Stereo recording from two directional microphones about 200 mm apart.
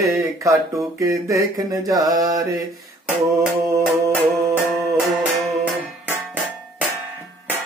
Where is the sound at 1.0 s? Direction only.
15° right (ahead or behind).